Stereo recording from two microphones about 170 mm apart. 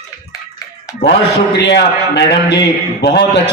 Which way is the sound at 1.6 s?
90° left.